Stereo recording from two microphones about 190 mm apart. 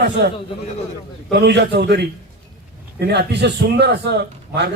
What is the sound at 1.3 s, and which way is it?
A man's voice, 65° right (ahead or behind).